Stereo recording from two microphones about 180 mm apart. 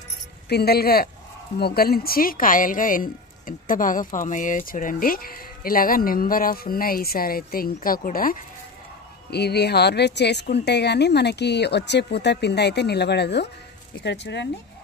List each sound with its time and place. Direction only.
0.5 s speech: 60° left (ahead or behind)
9.3 s speech: 65° left (ahead or behind)